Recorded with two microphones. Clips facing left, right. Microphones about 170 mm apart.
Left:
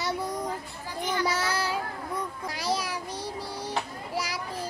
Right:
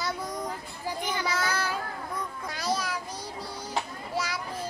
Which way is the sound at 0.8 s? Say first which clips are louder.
Even; 15° right (ahead or behind).